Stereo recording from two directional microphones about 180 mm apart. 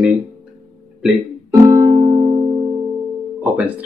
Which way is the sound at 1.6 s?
15° right (ahead or behind).